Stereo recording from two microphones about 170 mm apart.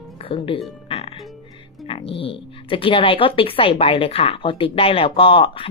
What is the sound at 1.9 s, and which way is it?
Speech, 35° left (ahead or behind).